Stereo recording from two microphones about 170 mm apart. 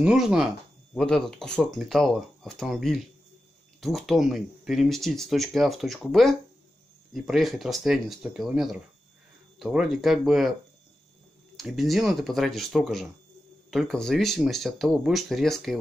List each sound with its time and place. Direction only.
0.0 s speech: 5° right (ahead or behind)
11.5 s speech: centre (ahead or behind)